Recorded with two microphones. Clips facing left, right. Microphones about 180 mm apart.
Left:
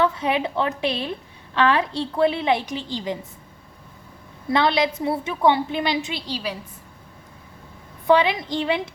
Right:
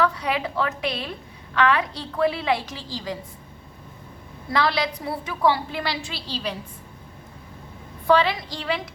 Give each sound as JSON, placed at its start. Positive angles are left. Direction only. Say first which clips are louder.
{"t": 0.0, "sound": "a woman's voice", "louder": "left 2 dB", "side_deg": 25}
{"t": 4.4, "sound": "a woman's voice", "louder": "left 4 dB", "side_deg": 25}
{"t": 8.0, "sound": "a woman's voice", "louder": "left 2 dB", "side_deg": 20}